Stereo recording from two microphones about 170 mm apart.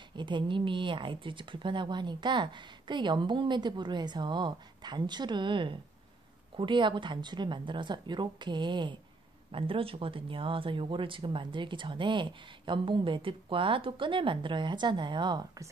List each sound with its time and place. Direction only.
0.1 s speech: 25° right (ahead or behind)